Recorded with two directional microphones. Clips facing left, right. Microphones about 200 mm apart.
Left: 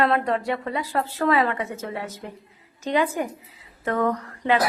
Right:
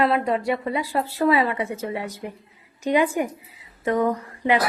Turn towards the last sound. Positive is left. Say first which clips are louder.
# right 1 dB
turn(degrees=-10)  # may be behind; listen again after turning